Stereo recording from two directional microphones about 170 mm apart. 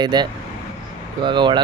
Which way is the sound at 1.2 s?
25° right (ahead or behind).